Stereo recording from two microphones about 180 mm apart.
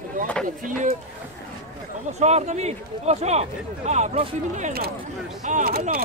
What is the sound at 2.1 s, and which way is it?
Speech, 40° right (ahead or behind).